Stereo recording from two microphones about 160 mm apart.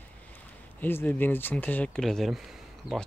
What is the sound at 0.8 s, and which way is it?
Speech, 10° left (ahead or behind).